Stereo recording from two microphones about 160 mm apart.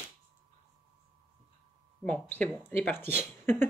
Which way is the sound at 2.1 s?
10° left (ahead or behind).